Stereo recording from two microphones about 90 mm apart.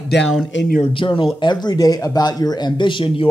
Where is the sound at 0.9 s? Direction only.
75° left (ahead or behind).